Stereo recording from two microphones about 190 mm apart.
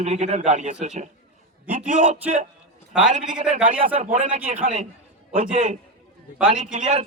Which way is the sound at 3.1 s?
40° right (ahead or behind).